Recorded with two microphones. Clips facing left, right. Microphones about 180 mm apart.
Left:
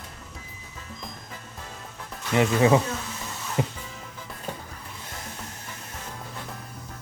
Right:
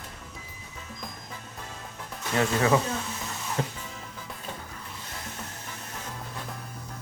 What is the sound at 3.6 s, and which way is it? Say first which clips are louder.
Music: left 4 dB; 15° left (ahead or behind).